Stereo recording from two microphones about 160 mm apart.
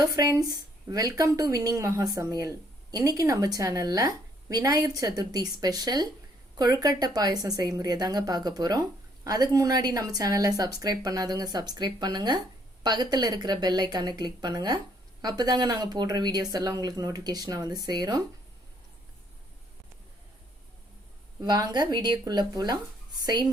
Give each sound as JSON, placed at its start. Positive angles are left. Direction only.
{"t": 0.0, "sound": "speech", "side_deg": -25}
{"t": 21.4, "sound": "speech", "side_deg": -25}